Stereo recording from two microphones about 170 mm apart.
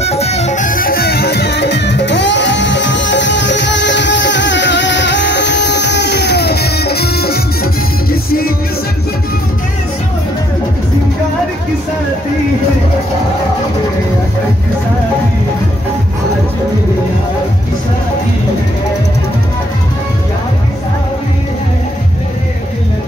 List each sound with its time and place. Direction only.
0.0 s music: 40° left (ahead or behind); by 8.5 s 60° left (ahead or behind)